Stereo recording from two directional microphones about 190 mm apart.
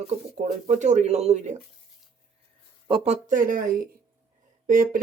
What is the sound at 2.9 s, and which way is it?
Speech, 35° right (ahead or behind).